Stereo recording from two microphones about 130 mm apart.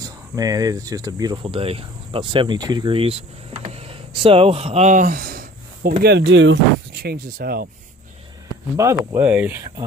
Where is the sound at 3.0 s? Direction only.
50° right (ahead or behind); by 5.2 s 85° right.